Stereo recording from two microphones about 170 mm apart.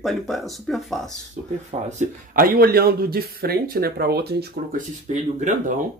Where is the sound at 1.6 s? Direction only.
45° right (ahead or behind); by 4.8 s 70° right (ahead or behind).